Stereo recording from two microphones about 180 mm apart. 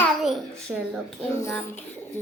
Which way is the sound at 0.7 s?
10° right (ahead or behind).